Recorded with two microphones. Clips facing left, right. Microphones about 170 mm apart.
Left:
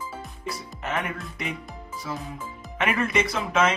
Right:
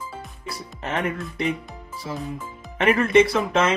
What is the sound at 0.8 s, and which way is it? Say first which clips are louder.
Speech: right 3 dB; 30° right (ahead or behind).